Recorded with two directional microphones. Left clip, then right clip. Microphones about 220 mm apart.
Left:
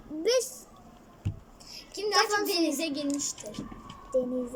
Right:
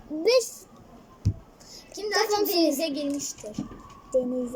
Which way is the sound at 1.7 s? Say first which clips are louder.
Right 1 dB; centre (ahead or behind).